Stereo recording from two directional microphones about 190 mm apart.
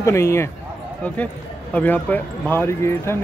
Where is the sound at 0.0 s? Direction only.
15° left (ahead or behind).